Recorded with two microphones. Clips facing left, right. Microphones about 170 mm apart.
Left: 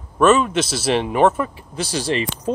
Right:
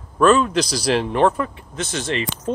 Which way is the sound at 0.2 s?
5° left (ahead or behind).